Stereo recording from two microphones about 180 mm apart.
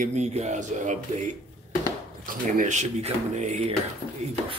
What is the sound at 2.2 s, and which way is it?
Speech, 50° right (ahead or behind).